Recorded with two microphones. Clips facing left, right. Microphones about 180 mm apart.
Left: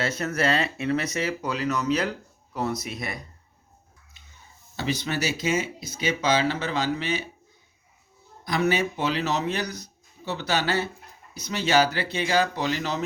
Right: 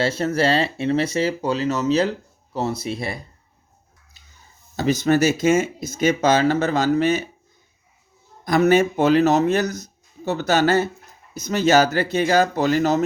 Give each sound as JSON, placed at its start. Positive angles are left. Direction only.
{"t": 0.0, "sound": "speech", "side_deg": -30}
{"t": 4.8, "sound": "speech", "side_deg": -45}
{"t": 8.4, "sound": "speech", "side_deg": -45}